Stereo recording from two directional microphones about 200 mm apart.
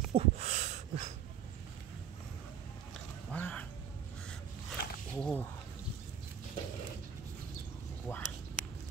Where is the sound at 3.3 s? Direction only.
5° left (ahead or behind).